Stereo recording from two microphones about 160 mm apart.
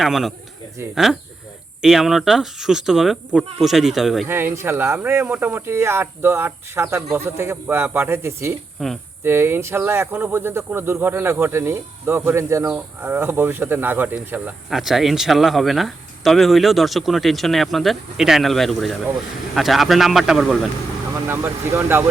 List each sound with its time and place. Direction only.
0.0 s speech: centre (ahead or behind)
0.8 s speech: 15° right (ahead or behind)
1.8 s speech: centre (ahead or behind)
4.3 s speech: 15° right (ahead or behind)
8.8 s speech: centre (ahead or behind)
9.2 s speech: 15° right (ahead or behind)
21.2 s speech: 15° right (ahead or behind)